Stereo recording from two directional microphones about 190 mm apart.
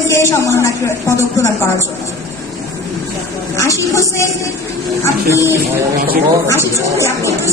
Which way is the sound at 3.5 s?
15° left (ahead or behind).